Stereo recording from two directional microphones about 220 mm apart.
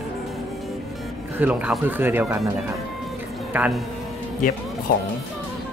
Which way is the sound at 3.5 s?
5° right (ahead or behind).